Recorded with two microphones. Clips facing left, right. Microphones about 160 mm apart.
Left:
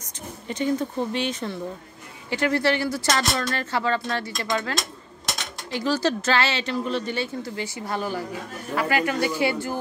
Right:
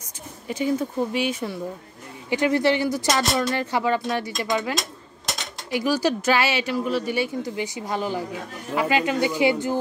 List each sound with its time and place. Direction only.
0.5 s speech: 5° right (ahead or behind)